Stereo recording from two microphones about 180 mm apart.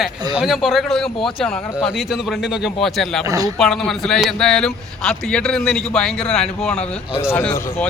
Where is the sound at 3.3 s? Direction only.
20° right (ahead or behind).